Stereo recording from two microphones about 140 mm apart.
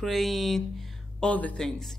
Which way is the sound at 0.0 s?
Centre (ahead or behind).